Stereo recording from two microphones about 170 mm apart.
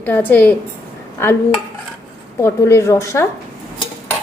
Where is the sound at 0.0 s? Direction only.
10° left (ahead or behind).